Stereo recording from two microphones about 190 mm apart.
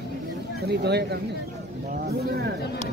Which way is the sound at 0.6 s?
60° right (ahead or behind).